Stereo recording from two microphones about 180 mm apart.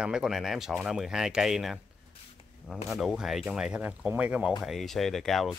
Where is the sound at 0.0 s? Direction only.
5° right (ahead or behind).